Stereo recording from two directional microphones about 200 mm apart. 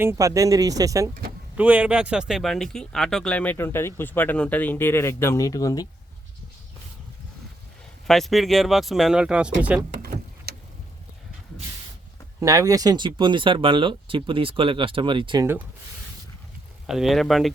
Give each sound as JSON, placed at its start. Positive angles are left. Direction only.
{"t": 0.0, "sound": "speech", "side_deg": -15}
{"t": 8.0, "sound": "speech", "side_deg": 0}
{"t": 9.9, "sound": "vehicle", "side_deg": -45}
{"t": 12.4, "sound": "speech", "side_deg": -15}
{"t": 16.8, "sound": "speech", "side_deg": 0}